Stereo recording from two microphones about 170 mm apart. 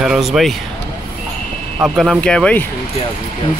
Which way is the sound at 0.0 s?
Centre (ahead or behind).